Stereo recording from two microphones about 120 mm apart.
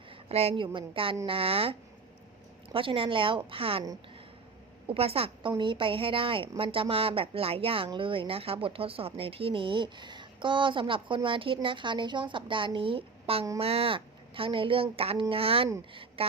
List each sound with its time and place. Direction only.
0.3 s speech: 60° right (ahead or behind)
0.5 s speech: 45° right (ahead or behind)
2.7 s speech: 50° right (ahead or behind)
4.9 s speech: 55° right (ahead or behind)